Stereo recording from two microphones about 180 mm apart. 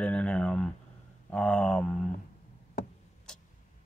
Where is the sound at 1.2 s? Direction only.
5° left (ahead or behind).